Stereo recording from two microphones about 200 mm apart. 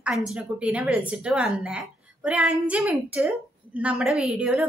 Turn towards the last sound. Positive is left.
turn(degrees=-5)  # may be behind; listen again after turning